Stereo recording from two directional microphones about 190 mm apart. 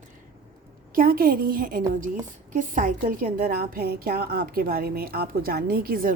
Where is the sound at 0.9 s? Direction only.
50° right (ahead or behind).